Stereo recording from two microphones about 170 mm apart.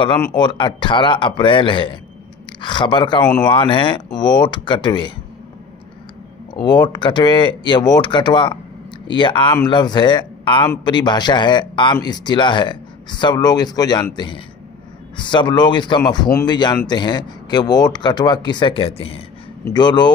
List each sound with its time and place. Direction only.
0.2 s speech: 25° left (ahead or behind)
6.5 s speech: 25° left (ahead or behind)